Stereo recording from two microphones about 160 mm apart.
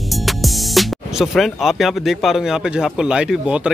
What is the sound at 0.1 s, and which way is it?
Speech, centre (ahead or behind).